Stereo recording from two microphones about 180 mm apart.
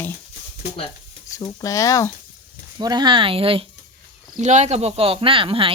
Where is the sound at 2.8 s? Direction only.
25° right (ahead or behind).